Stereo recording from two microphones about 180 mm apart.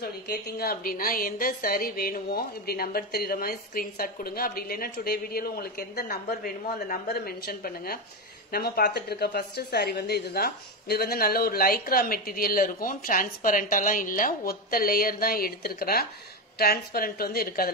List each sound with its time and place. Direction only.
0.0 s a woman's voice: 60° left (ahead or behind)